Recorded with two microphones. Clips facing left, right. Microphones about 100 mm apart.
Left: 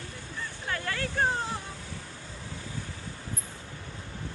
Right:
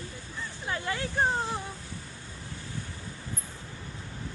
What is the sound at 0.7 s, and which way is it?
Vehicle, 20° right (ahead or behind).